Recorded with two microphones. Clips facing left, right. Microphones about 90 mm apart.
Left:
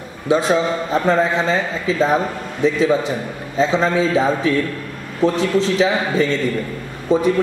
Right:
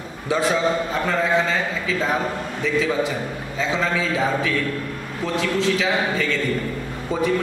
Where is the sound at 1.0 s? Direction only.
30° left (ahead or behind).